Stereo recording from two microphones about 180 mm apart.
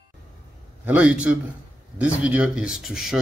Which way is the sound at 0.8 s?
10° right (ahead or behind).